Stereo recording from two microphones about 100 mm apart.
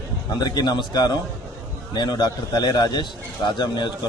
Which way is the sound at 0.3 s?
40° left (ahead or behind).